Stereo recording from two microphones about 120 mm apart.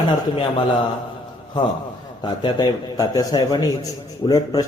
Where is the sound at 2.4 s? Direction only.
30° left (ahead or behind).